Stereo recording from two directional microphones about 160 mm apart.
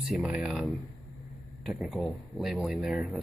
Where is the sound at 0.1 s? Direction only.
Centre (ahead or behind).